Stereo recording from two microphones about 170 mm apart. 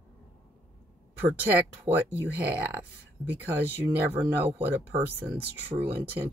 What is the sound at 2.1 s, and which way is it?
Speech, 10° right (ahead or behind).